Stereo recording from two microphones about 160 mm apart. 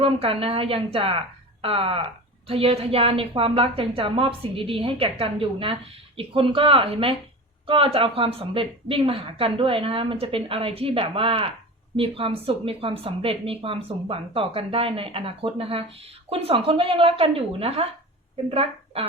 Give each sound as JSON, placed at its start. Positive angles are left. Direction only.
{"t": 0.0, "sound": "a woman's voice", "side_deg": -35}